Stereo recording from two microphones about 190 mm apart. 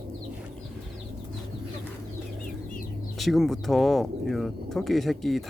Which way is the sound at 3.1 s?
Centre (ahead or behind).